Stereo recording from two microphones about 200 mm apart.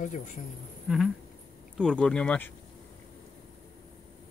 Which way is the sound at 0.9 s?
Centre (ahead or behind).